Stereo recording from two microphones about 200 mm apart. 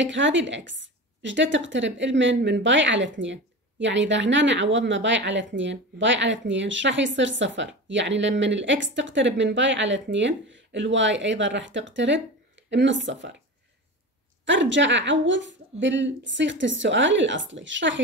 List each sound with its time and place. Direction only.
0.0 s speech: 65° right (ahead or behind)
14.4 s speech: 65° right (ahead or behind)